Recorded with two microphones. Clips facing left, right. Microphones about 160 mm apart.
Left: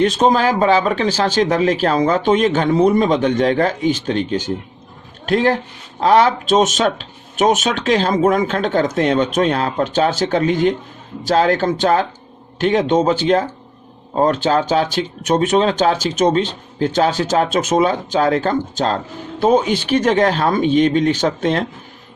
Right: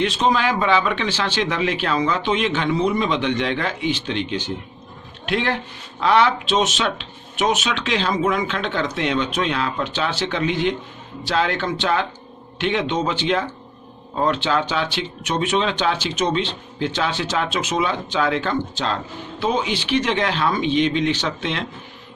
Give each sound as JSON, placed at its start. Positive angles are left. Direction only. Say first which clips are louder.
{"t": 0.0, "sound": "speech", "louder": "left 5 dB", "side_deg": 45}